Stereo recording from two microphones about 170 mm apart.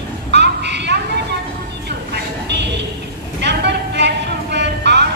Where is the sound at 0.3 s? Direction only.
90° right.